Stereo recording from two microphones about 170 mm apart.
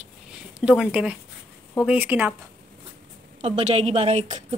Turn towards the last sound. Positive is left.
turn(degrees=-45)  # may be behind; listen again after turning